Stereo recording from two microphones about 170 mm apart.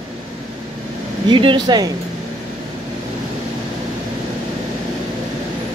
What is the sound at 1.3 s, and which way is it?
Speech, 30° right (ahead or behind).